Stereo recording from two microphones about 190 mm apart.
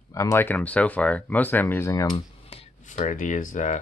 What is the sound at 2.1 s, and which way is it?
Speech, 30° left (ahead or behind).